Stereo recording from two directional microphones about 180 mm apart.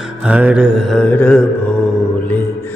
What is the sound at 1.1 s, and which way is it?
Music, 10° left (ahead or behind).